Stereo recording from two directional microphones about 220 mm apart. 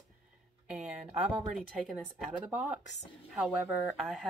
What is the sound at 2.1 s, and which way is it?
Speech, 5° right (ahead or behind).